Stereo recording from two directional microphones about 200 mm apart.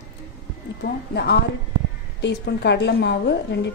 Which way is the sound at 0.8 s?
55° left (ahead or behind).